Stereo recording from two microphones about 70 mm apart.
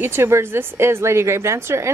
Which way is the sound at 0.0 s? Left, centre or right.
Right.